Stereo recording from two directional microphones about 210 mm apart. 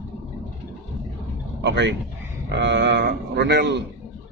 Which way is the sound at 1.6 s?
60° right (ahead or behind).